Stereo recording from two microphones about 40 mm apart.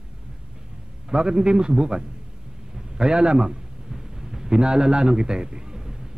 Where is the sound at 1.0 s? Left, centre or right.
Right.